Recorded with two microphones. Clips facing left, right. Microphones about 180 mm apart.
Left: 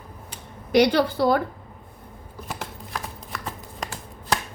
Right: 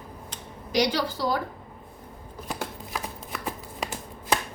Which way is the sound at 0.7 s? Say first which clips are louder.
Left 7 dB; 60° left (ahead or behind).